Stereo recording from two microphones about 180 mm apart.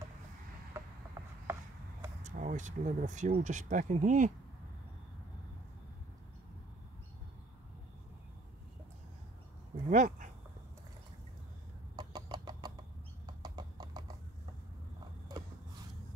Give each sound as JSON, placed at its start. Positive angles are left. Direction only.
{"t": 1.1, "sound": "a sound", "side_deg": -15}
{"t": 2.2, "sound": "speech", "side_deg": -45}
{"t": 9.8, "sound": "dog", "side_deg": -45}
{"t": 12.0, "sound": "chicken", "side_deg": -20}
{"t": 13.4, "sound": "clip-clop", "side_deg": -20}